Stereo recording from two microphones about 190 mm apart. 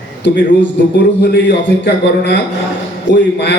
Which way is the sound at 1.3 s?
65° left (ahead or behind).